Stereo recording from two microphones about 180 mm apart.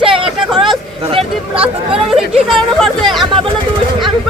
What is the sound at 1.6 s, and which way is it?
Speech, 5° right (ahead or behind).